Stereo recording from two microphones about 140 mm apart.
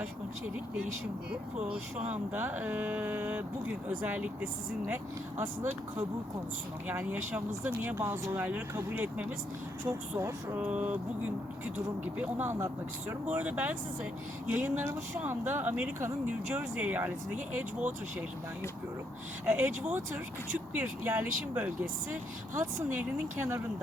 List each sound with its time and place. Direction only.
2.0 s speech: 10° right (ahead or behind)
6.8 s speech: 10° right (ahead or behind)
19.5 s speech: 10° right (ahead or behind)